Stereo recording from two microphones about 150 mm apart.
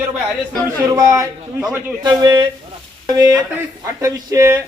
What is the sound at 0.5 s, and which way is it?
Speech, 20° right (ahead or behind).